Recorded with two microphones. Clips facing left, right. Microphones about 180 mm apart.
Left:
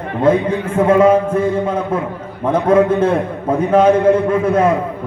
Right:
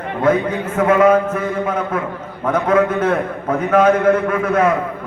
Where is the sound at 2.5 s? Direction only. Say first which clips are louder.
Left 3 dB; 30° left (ahead or behind).